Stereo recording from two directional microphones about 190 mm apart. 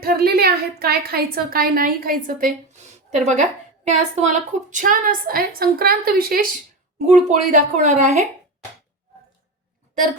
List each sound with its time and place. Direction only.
0.0 s a woman's voice: 50° right (ahead or behind)
7.1 s speech: 40° right (ahead or behind)